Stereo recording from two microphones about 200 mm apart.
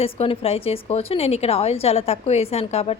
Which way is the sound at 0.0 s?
30° left (ahead or behind).